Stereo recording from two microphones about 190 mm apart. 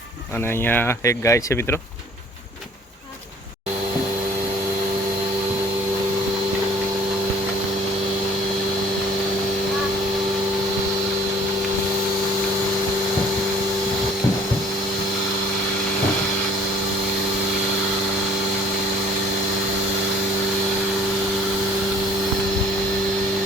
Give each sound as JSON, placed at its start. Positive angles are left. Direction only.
{"t": 0.6, "sound": "speech", "side_deg": 10}